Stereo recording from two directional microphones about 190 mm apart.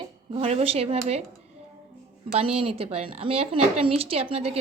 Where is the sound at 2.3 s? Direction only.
30° right (ahead or behind).